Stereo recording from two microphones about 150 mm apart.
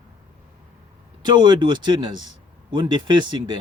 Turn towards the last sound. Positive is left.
turn(degrees=-30)  # may be behind; listen again after turning